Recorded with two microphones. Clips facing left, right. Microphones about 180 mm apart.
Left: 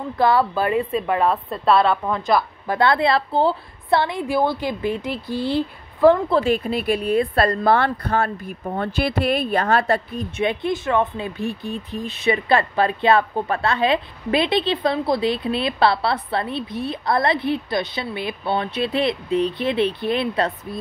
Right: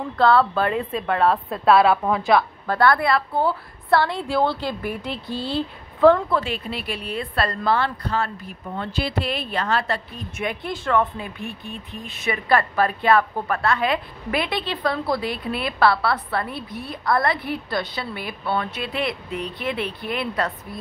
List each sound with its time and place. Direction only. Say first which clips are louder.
0.2 s a woman's voice: even; 10° left (ahead or behind)
2.6 s a woman's voice: left 1 dB; 20° left (ahead or behind)
6.4 s speech: left 9 dB; 45° left (ahead or behind)
10.3 s a woman's voice: left 6 dB; 25° left (ahead or behind)
12.3 s a woman's voice: left 2 dB; 25° left (ahead or behind)